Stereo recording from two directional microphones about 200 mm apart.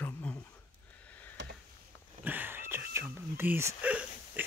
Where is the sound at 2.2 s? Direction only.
10° right (ahead or behind).